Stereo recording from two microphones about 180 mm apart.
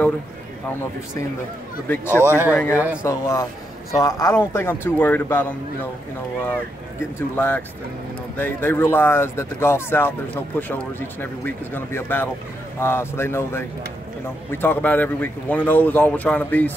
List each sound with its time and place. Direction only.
1.9 s speech: 10° left (ahead or behind)
2.2 s speech: 10° right (ahead or behind)
2.5 s speech: 10° left (ahead or behind)
7.2 s speech: 10° left (ahead or behind)